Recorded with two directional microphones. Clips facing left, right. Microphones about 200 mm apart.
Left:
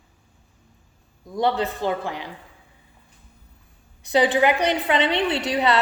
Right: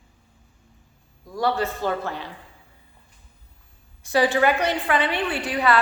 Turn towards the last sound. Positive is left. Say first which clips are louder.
# left 1 dB
turn(degrees=25)  # may be behind; listen again after turning